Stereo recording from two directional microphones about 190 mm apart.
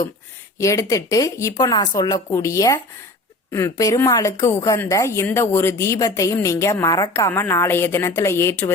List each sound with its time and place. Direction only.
0.6 s a woman's voice: 15° left (ahead or behind)